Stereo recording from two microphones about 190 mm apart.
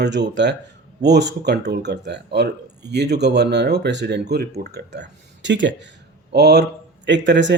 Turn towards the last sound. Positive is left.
turn(degrees=-70)  # may be behind; listen again after turning